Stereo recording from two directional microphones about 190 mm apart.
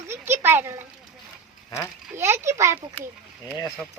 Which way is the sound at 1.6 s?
15° left (ahead or behind).